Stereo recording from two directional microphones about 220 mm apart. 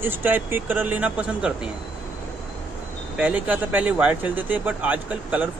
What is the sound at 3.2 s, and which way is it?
Speech, 5° right (ahead or behind).